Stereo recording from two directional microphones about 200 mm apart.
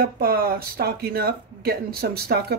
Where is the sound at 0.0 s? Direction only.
50° right (ahead or behind).